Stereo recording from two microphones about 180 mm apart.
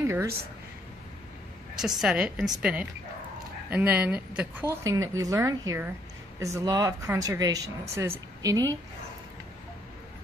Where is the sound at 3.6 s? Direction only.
10° right (ahead or behind).